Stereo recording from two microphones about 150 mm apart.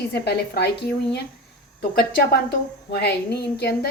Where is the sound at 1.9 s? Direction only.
85° left.